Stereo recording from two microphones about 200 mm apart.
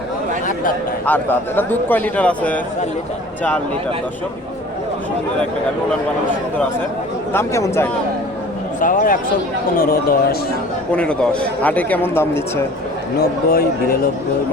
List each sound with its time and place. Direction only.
1.0 s a man's voice: 10° left (ahead or behind)
7.3 s a man's voice: 15° left (ahead or behind)
8.8 s speech: 40° left (ahead or behind)
10.9 s a man's voice: 5° left (ahead or behind)
13.5 s speech: 45° left (ahead or behind)